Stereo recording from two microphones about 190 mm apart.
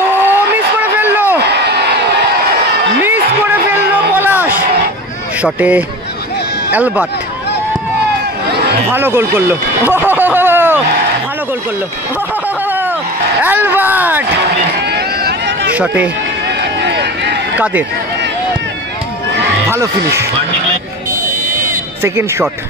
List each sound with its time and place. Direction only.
0.2 s vehicle: 10° right (ahead or behind)
1.4 s crowd: 60° right (ahead or behind)
3.9 s a sound: 10° right (ahead or behind)
5.4 s speech: 10° right (ahead or behind)
8.9 s speech: 10° right (ahead or behind)
9.9 s a sound: 10° right (ahead or behind)
12.6 s a sound: 10° right (ahead or behind)
13.4 s speech: 10° right (ahead or behind)
14.9 s run: 60° right (ahead or behind)
15.7 s speech: 10° right (ahead or behind)
16.8 s run: 65° right (ahead or behind)
19.7 s speech: 15° right (ahead or behind)
22.0 s speech: 10° right (ahead or behind)